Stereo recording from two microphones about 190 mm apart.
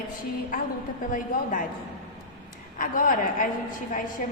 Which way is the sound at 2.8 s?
45° left (ahead or behind).